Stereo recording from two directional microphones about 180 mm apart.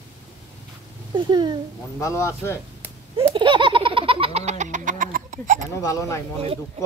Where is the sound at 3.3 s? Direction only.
25° right (ahead or behind); by 5.6 s 45° right (ahead or behind).